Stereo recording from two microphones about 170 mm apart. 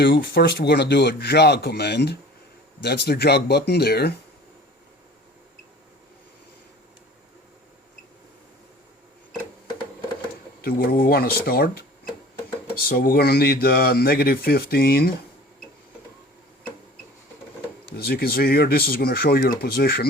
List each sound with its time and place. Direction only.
0.0 s speech: 75° left (ahead or behind)
10.6 s speech: 60° left (ahead or behind)
12.8 s speech: 55° left (ahead or behind)
17.9 s speech: 65° left (ahead or behind)